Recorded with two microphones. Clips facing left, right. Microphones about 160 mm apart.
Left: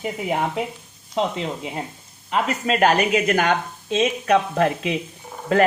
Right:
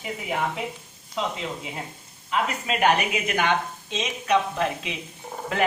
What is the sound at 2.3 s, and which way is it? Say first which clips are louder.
Speech: left 4 dB; 45° left (ahead or behind).